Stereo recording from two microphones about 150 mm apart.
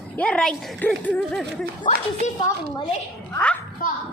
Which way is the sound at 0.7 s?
10° left (ahead or behind).